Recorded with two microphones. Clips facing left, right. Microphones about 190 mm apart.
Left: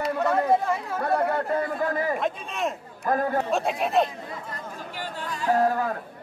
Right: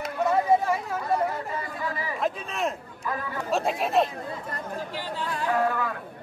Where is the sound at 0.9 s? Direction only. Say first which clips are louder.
Left 2 dB; 60° left (ahead or behind).